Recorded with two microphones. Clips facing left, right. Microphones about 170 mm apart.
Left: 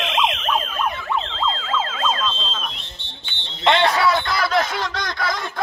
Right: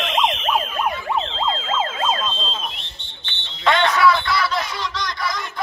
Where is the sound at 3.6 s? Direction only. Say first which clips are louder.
Even; 30° left (ahead or behind).